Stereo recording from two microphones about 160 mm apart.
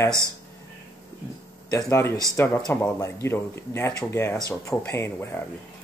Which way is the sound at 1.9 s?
15° left (ahead or behind).